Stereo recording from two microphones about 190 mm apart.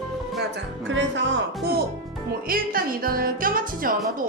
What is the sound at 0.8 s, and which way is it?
Speech, 75° right (ahead or behind).